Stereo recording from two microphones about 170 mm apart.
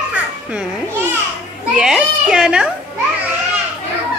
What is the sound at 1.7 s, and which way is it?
A child's voice, 5° right (ahead or behind).